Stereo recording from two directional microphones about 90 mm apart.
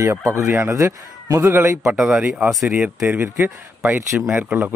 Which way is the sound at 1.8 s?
10° right (ahead or behind).